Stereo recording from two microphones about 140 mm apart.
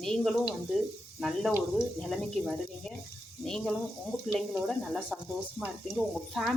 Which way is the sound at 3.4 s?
5° left (ahead or behind).